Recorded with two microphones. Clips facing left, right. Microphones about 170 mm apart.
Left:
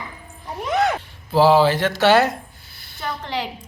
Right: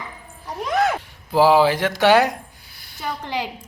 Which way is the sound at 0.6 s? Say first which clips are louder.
Even; centre (ahead or behind).